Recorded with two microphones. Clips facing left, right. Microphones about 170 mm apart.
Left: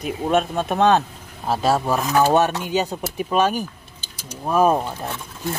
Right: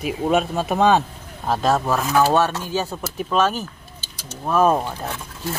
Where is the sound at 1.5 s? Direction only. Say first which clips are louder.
Even; 10° left (ahead or behind).